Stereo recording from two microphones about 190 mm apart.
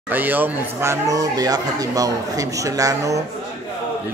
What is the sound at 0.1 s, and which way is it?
Speech, 10° right (ahead or behind).